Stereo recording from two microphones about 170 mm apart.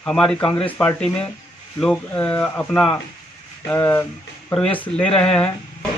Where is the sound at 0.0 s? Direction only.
5° left (ahead or behind).